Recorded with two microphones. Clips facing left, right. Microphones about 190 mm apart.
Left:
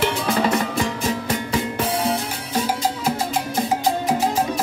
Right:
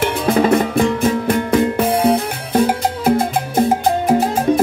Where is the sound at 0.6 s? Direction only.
55° right (ahead or behind).